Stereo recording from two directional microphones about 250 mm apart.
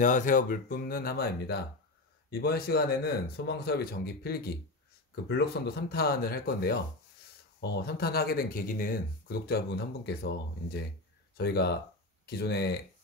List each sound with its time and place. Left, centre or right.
0.0 s speech: left
11.3 s speech: left